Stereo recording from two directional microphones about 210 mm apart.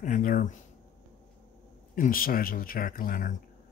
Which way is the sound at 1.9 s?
40° left (ahead or behind).